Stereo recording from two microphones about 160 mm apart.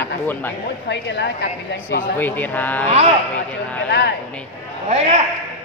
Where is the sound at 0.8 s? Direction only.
90° left.